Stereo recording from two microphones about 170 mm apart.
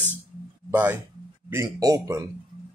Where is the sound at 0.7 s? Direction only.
15° right (ahead or behind).